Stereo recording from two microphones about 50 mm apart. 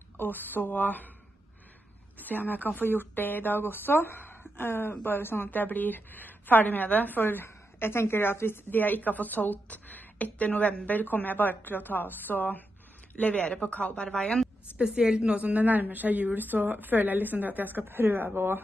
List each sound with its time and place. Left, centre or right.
0.2 s a woman's voice: left
2.1 s a woman's voice: left
13.1 s speech: left
14.0 s a woman's voice: centre
14.8 s a woman's voice: centre; by 18.6 s right